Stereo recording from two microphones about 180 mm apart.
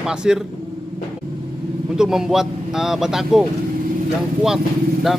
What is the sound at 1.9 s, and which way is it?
A man's voice, 5° right (ahead or behind).